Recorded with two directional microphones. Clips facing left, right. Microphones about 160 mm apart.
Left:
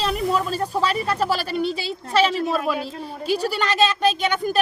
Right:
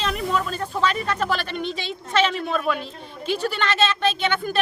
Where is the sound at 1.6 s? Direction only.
35° left (ahead or behind).